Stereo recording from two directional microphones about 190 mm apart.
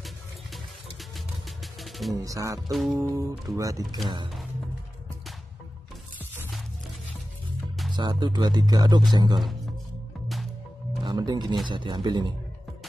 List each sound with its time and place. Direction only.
1.8 s music: centre (ahead or behind)
2.1 s speech: 15° right (ahead or behind)
2.7 s music: centre (ahead or behind)
3.0 s speech: 15° right (ahead or behind)
7.9 s speech: 25° right (ahead or behind)
10.2 s music: centre (ahead or behind)
11.1 s speech: 20° right (ahead or behind)